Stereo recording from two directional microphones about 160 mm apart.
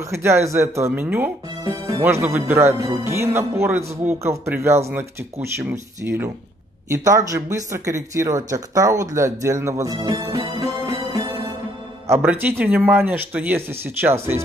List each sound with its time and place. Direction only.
0.1 s speech: 15° right (ahead or behind)
1.6 s speech: 25° right (ahead or behind)
12.3 s speech: 10° right (ahead or behind)